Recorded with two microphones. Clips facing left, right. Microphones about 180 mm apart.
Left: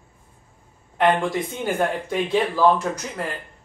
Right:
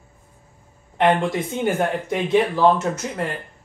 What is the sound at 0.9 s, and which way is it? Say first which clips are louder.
Speech: right 1 dB; 25° right (ahead or behind).